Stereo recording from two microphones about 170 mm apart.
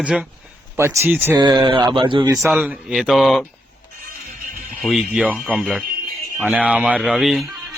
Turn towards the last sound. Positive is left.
turn(degrees=0)  # may be behind; listen again after turning